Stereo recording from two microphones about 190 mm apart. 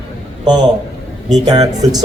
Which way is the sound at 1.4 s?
20° right (ahead or behind).